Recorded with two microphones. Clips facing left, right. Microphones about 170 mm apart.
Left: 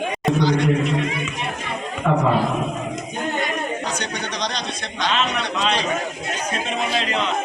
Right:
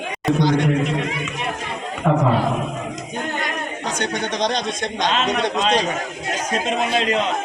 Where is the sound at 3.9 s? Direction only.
50° right (ahead or behind).